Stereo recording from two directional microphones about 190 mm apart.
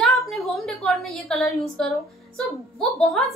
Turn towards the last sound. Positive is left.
turn(degrees=5)  # may be behind; listen again after turning